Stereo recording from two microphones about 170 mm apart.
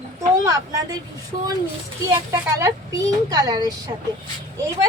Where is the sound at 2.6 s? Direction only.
20° right (ahead or behind).